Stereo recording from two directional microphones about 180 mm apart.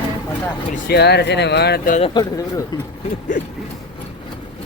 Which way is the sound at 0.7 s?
60° left (ahead or behind).